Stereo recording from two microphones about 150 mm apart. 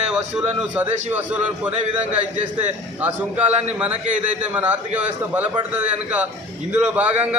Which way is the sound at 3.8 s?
10° right (ahead or behind).